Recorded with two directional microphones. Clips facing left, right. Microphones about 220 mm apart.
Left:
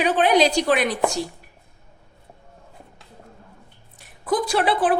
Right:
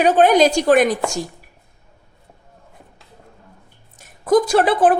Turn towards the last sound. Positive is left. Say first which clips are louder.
# right 5 dB
turn(degrees=-45)  # may be behind; listen again after turning